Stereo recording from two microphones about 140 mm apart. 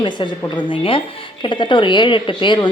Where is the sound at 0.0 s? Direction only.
35° left (ahead or behind).